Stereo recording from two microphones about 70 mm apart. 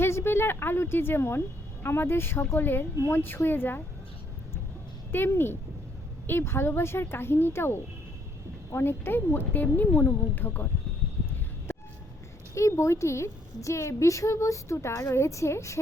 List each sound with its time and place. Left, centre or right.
0.0 s a woman's voice: left
5.3 s speech: left
12.5 s a woman's voice: left